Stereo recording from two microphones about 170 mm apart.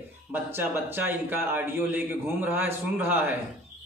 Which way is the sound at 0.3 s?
10° right (ahead or behind).